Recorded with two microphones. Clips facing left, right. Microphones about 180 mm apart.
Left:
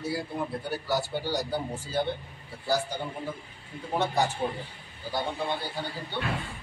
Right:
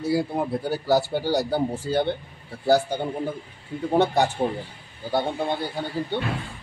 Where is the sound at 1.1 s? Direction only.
70° right (ahead or behind).